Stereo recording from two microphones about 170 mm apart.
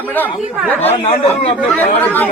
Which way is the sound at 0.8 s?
35° left (ahead or behind).